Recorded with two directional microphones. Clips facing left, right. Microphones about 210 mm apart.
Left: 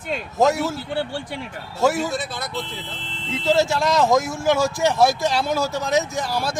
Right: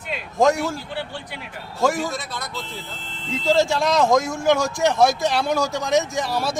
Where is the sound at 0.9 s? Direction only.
45° left (ahead or behind).